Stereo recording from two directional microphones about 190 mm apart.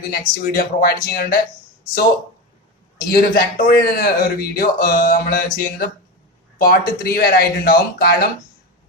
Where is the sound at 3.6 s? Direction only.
50° left (ahead or behind).